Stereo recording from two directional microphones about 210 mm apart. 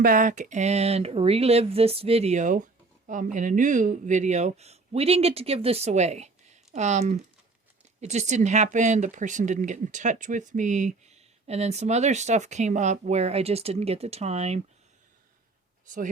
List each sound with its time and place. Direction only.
0.0 s speech: 40° right (ahead or behind)